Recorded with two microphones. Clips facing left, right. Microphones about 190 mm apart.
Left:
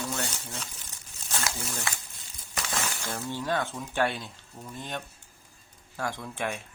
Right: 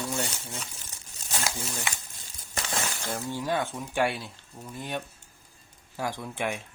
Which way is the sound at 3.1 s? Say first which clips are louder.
Right 1 dB; 10° right (ahead or behind).